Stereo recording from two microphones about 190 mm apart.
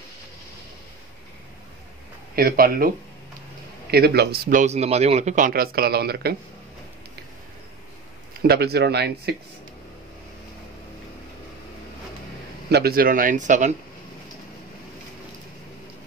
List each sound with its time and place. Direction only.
2.3 s a man's voice: 50° right (ahead or behind)
3.9 s a man's voice: 55° right (ahead or behind)
8.4 s speech: 55° right (ahead or behind)
12.6 s a man's voice: 55° right (ahead or behind); by 13.7 s 40° right (ahead or behind)